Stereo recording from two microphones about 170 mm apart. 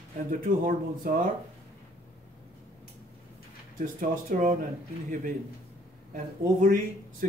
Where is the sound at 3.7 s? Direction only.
50° right (ahead or behind).